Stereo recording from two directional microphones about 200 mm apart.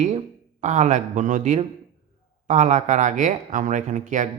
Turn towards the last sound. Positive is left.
turn(degrees=-40)  # may be behind; listen again after turning